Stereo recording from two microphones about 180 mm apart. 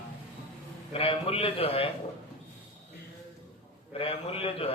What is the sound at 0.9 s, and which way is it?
Speech, 30° left (ahead or behind).